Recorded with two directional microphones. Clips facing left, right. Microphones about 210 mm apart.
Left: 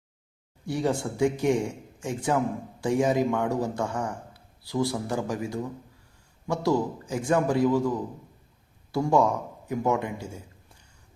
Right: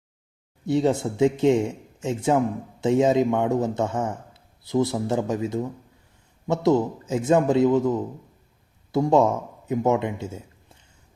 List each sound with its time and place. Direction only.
0.6 s a man's voice: 20° right (ahead or behind)